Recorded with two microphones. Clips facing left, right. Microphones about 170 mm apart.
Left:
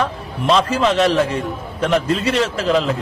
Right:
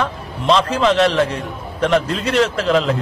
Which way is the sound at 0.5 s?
5° left (ahead or behind).